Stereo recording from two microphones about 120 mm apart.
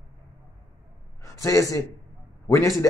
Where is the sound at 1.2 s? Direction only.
30° left (ahead or behind).